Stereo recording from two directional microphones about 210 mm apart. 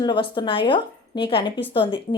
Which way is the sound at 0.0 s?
20° left (ahead or behind).